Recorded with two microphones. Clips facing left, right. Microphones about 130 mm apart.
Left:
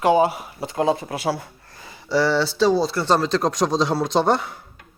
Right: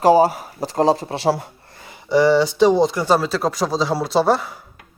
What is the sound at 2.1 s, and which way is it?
Speech, 15° right (ahead or behind).